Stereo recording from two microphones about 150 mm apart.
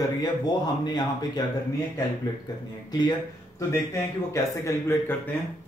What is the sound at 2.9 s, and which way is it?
Speech, 30° left (ahead or behind).